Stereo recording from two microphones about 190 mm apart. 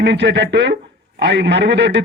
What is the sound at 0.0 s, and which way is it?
A man's voice, 65° right (ahead or behind).